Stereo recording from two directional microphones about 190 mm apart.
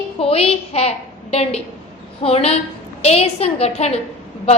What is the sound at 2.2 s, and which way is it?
A woman's voice, 30° left (ahead or behind).